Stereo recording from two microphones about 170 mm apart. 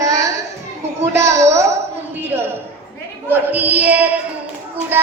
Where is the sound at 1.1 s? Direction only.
15° right (ahead or behind).